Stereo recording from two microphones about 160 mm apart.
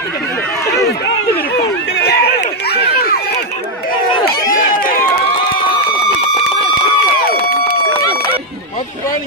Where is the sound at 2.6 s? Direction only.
80° left.